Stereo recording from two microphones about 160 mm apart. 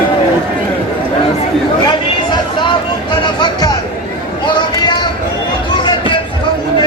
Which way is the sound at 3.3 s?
25° left (ahead or behind).